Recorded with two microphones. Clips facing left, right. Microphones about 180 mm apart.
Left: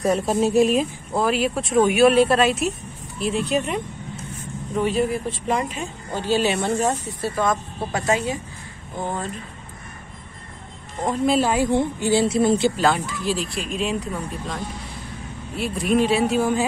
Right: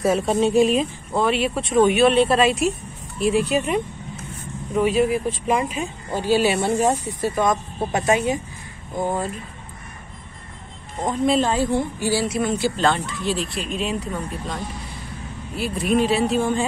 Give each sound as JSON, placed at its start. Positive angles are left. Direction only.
{"t": 0.0, "sound": "speech", "side_deg": 0}
{"t": 4.7, "sound": "speech", "side_deg": -10}
{"t": 11.1, "sound": "speech", "side_deg": 5}
{"t": 12.7, "sound": "speech", "side_deg": 5}